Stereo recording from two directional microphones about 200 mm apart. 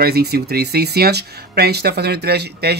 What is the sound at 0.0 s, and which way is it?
Speech, 50° right (ahead or behind).